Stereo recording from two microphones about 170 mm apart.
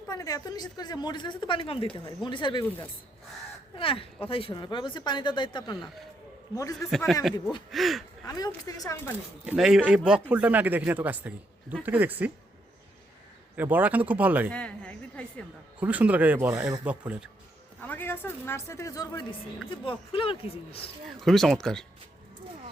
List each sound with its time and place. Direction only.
0.1 s a woman's voice: 20° left (ahead or behind)
3.8 s a woman's voice: 30° left (ahead or behind)
6.9 s speech: centre (ahead or behind)
8.3 s a woman's voice: 20° left (ahead or behind)
9.1 s speech: 5° right (ahead or behind)
13.6 s speech: 10° right (ahead or behind)
14.5 s a woman's voice: 5° left (ahead or behind)
15.8 s speech: 10° right (ahead or behind)
17.8 s a woman's voice: 10° left (ahead or behind); by 20.9 s 35° left (ahead or behind)
21.2 s speech: centre (ahead or behind)